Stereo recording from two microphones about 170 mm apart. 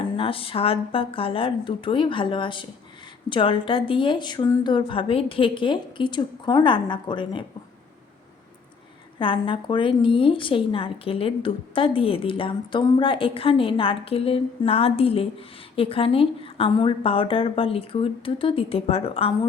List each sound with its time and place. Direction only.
0.2 s a woman's voice: 30° left (ahead or behind)
9.1 s a woman's voice: 30° left (ahead or behind)